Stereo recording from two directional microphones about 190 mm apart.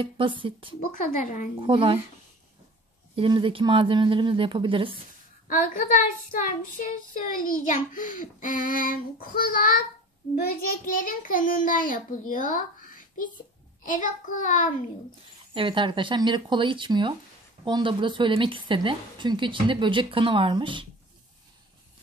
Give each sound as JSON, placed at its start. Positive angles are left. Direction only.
{"t": 0.0, "sound": "a woman's voice", "side_deg": -25}
{"t": 0.8, "sound": "child singing", "side_deg": 45}
{"t": 1.6, "sound": "a woman's voice", "side_deg": -25}
{"t": 3.2, "sound": "a woman's voice", "side_deg": -25}
{"t": 5.5, "sound": "child singing", "side_deg": 45}
{"t": 15.5, "sound": "a woman's voice", "side_deg": -25}